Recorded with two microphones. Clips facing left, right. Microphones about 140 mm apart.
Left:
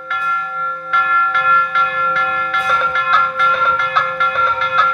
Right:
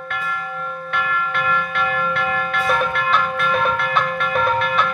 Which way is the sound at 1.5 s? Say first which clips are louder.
Left 3 dB; 55° right (ahead or behind).